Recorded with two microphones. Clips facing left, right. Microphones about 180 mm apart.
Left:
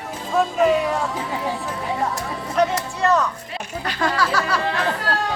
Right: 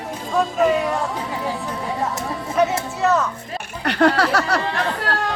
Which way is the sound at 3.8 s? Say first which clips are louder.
Right 6 dB; 65° right (ahead or behind).